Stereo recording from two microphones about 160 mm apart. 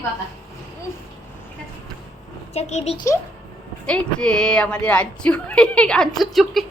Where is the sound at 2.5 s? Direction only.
45° left (ahead or behind).